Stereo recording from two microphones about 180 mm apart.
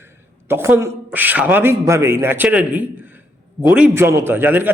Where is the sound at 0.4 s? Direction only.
10° right (ahead or behind).